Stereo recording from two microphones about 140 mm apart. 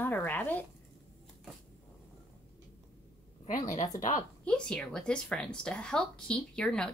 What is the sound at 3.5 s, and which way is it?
Speech, 65° left (ahead or behind).